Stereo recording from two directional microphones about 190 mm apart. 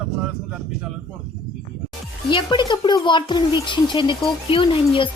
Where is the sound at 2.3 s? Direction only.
25° left (ahead or behind).